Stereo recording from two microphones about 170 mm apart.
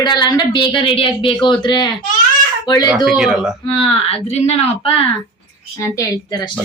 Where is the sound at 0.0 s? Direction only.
25° left (ahead or behind).